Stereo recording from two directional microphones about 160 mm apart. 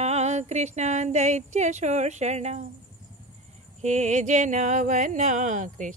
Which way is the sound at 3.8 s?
45° right (ahead or behind).